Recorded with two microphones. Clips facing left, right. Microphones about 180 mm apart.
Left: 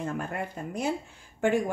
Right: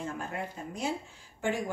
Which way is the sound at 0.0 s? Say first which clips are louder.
Left 4 dB; 55° left (ahead or behind).